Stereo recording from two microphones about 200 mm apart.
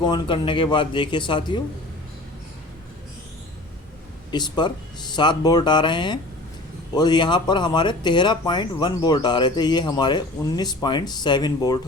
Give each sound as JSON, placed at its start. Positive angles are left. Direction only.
{"t": 0.0, "sound": "speech", "side_deg": 25}
{"t": 4.3, "sound": "speech", "side_deg": 20}